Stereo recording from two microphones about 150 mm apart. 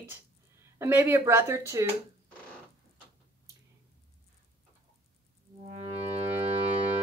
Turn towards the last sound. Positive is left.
turn(degrees=-40)  # may be behind; listen again after turning